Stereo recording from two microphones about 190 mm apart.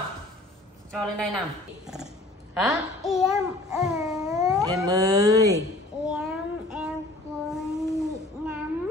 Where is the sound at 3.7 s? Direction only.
5° right (ahead or behind).